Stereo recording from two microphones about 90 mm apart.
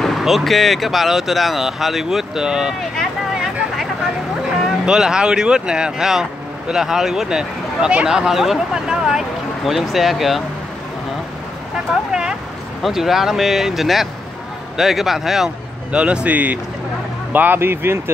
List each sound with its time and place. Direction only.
0.0 s speech: centre (ahead or behind)
4.8 s speech: 10° right (ahead or behind)
12.1 s a sound: 10° right (ahead or behind)
12.8 s speech: 5° right (ahead or behind); by 18.1 s 25° right (ahead or behind)